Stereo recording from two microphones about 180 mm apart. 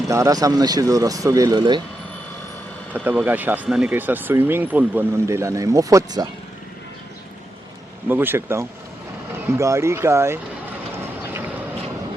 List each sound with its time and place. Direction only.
0.1 s speech: 20° right (ahead or behind)
2.9 s speech: 10° right (ahead or behind)
8.0 s speech: 10° right (ahead or behind)
10.9 s vehicle: 10° right (ahead or behind)